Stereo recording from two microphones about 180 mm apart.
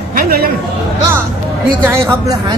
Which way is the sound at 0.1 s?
55° right (ahead or behind).